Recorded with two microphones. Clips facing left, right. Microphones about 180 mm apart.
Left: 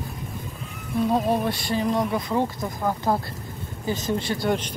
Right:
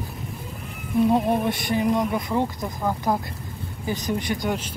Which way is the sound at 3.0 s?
15° right (ahead or behind).